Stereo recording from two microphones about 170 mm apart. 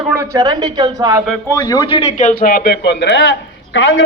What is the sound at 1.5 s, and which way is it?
A man's voice, 20° left (ahead or behind).